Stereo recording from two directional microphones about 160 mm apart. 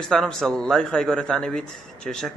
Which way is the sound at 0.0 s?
5° left (ahead or behind).